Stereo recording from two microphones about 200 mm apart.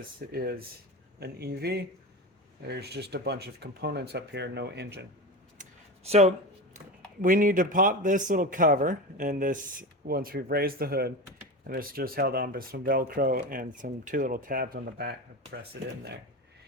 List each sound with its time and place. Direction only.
0.3 s speech: 50° right (ahead or behind)
6.1 s a man's voice: 35° right (ahead or behind); by 15.1 s 50° right (ahead or behind)